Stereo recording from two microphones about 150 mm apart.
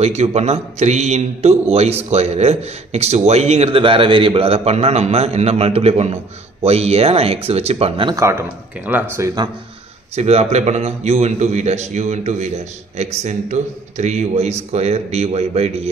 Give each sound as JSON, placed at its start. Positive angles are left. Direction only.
{"t": 0.0, "sound": "a man's voice", "side_deg": -45}
{"t": 8.2, "sound": "speech", "side_deg": -20}
{"t": 10.1, "sound": "a man's voice", "side_deg": -45}